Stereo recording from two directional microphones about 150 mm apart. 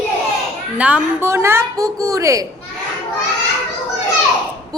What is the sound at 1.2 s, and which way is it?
A woman's voice, 15° right (ahead or behind).